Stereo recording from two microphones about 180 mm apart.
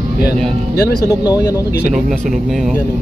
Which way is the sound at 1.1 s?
20° left (ahead or behind).